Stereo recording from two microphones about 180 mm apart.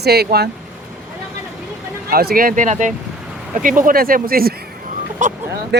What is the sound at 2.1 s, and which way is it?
Speech, 55° right (ahead or behind).